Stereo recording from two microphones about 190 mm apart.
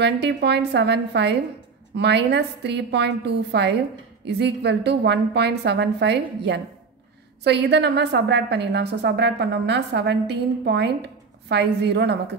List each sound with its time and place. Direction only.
0.0 s a woman's voice: 65° right (ahead or behind)